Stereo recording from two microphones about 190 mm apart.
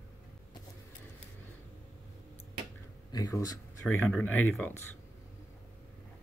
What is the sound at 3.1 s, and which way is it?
Speech, 20° left (ahead or behind).